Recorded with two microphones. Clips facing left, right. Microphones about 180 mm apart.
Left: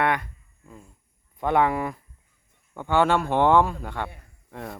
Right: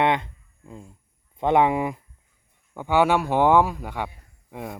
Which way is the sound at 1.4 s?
20° right (ahead or behind).